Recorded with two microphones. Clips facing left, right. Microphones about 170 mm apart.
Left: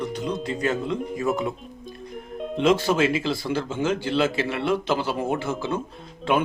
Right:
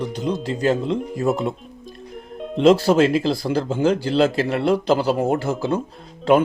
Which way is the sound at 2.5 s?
35° right (ahead or behind).